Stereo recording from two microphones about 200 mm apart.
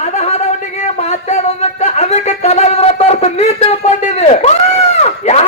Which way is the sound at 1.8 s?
35° left (ahead or behind).